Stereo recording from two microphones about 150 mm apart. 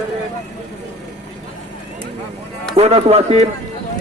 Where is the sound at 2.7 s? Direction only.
45° right (ahead or behind).